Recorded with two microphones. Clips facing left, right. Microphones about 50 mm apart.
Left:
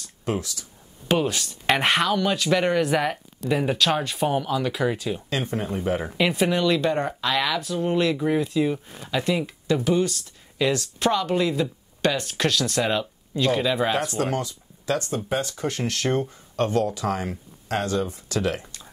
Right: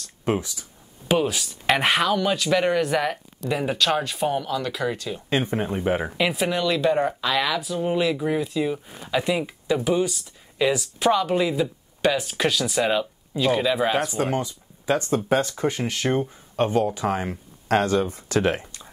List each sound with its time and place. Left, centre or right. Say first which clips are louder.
0.2 s speech: right 3 dB; right
1.0 s speech: right 1 dB; centre
5.3 s speech: right 6 dB; right
6.1 s speech: left 1 dB; centre
14.1 s speech: right 1 dB; centre
15.0 s speech: right 5 dB; right
15.8 s speech: right 1 dB; centre
17.6 s speech: right 4 dB; right